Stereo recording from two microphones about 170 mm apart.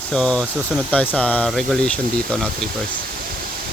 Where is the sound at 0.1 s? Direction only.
5° left (ahead or behind).